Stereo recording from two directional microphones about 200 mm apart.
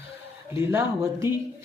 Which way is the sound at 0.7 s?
15° right (ahead or behind).